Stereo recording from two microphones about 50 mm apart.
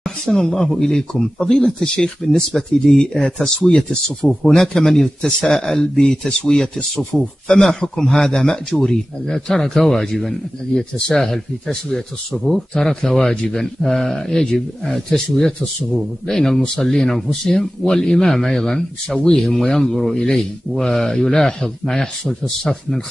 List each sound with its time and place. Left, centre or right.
0.2 s speech: centre
2.9 s speech: centre